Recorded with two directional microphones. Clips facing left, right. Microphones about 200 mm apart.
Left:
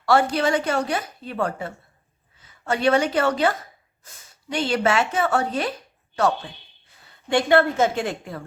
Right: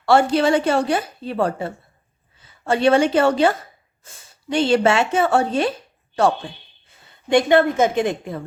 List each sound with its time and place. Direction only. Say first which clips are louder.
0.0 s speech: right 4 dB; 25° right (ahead or behind)
7.3 s speech: right 3 dB; 20° right (ahead or behind)